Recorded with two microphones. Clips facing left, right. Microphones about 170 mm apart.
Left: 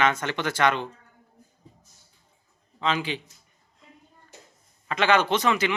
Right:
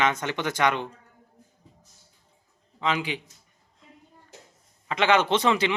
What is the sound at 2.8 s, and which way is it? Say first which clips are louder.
Speech: even; 15° right (ahead or behind).